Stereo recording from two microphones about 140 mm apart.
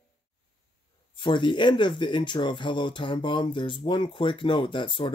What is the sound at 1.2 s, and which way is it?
Speech, 35° left (ahead or behind).